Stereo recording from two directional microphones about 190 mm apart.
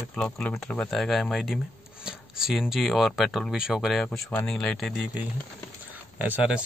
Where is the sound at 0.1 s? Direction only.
5° left (ahead or behind).